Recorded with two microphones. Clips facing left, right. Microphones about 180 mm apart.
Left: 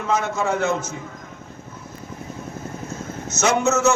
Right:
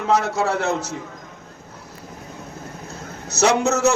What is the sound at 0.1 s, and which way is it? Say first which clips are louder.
Speech: right 2 dB; 40° right (ahead or behind).